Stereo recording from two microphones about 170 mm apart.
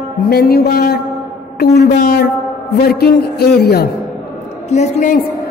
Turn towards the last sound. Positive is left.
turn(degrees=45)  # may be behind; listen again after turning